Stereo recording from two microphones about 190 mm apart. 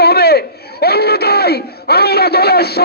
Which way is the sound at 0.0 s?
55° left (ahead or behind).